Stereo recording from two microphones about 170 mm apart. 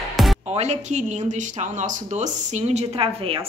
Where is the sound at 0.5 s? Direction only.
40° right (ahead or behind).